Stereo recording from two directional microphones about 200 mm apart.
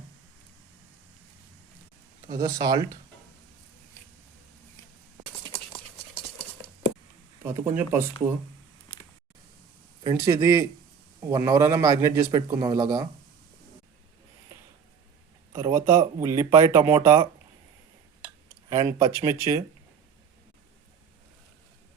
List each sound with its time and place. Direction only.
2.3 s speech: 20° right (ahead or behind)
7.4 s a man's voice: 10° right (ahead or behind)
8.9 s a sound: 25° left (ahead or behind)
10.0 s a man's voice: 15° right (ahead or behind)
15.5 s a man's voice: 15° right (ahead or behind)
18.9 s a man's voice: 15° right (ahead or behind)